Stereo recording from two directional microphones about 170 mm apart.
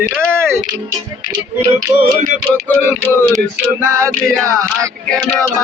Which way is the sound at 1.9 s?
20° right (ahead or behind).